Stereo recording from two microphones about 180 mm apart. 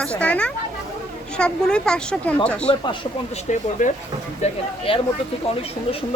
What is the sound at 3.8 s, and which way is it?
Speech, 45° left (ahead or behind).